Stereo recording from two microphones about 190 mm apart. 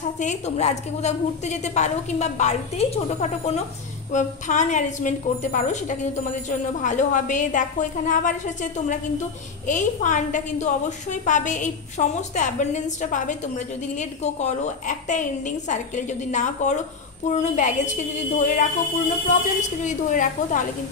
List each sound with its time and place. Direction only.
0.2 s a woman's voice: 35° left (ahead or behind)